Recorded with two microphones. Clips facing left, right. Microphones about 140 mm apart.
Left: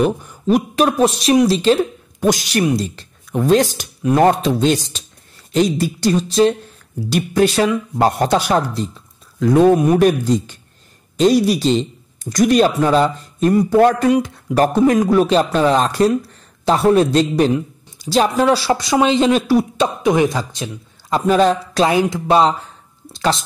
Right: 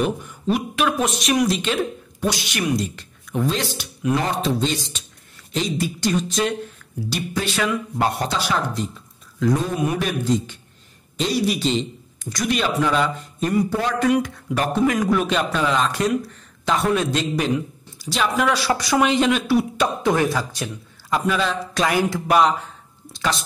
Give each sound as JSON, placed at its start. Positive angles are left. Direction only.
{"t": 0.0, "sound": "speech", "side_deg": 40}
{"t": 3.4, "sound": "a man's voice", "side_deg": 45}
{"t": 5.5, "sound": "speech", "side_deg": 40}
{"t": 7.1, "sound": "a man's voice", "side_deg": 50}
{"t": 7.5, "sound": "speech", "side_deg": 35}
{"t": 8.2, "sound": "a man's voice", "side_deg": 50}
{"t": 9.5, "sound": "speech", "side_deg": 60}
{"t": 9.8, "sound": "a man's voice", "side_deg": 40}
{"t": 14.0, "sound": "speech", "side_deg": 25}
{"t": 14.5, "sound": "speech", "side_deg": 40}
{"t": 19.8, "sound": "speech", "side_deg": 15}
{"t": 21.3, "sound": "speech", "side_deg": 40}
{"t": 21.8, "sound": "speech", "side_deg": 25}